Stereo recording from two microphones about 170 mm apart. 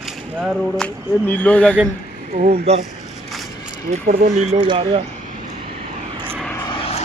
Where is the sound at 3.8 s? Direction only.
45° right (ahead or behind).